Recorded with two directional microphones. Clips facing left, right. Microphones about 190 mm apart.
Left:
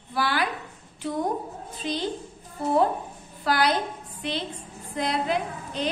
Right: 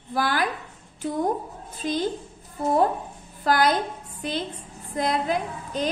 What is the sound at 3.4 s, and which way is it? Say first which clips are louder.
A woman's voice: right 2 dB; 45° right (ahead or behind).